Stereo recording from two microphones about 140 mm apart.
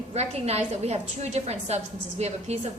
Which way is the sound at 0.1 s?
50° right (ahead or behind).